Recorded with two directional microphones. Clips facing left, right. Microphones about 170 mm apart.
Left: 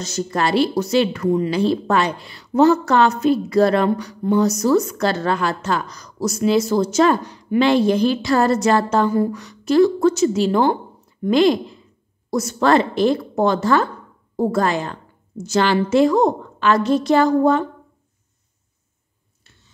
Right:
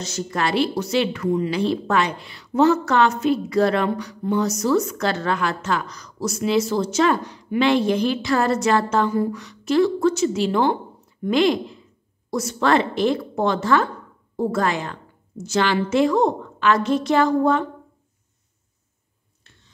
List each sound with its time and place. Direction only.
0.0 s a woman's voice: 40° left (ahead or behind)